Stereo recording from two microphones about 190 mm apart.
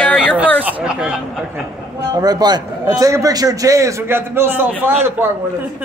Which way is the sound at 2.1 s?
20° right (ahead or behind).